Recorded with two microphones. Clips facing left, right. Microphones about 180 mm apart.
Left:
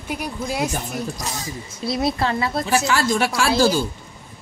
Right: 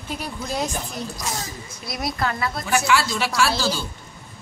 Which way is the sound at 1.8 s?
30° left (ahead or behind).